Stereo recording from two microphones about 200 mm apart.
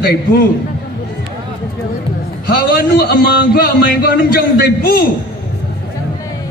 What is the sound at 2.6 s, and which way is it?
A man's voice, 50° left (ahead or behind).